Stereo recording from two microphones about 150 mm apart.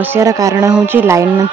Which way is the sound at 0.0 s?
15° right (ahead or behind).